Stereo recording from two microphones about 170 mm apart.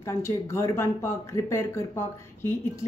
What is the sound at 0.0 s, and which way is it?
Speech, 15° left (ahead or behind).